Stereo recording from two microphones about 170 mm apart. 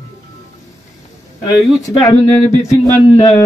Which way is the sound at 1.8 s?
20° left (ahead or behind).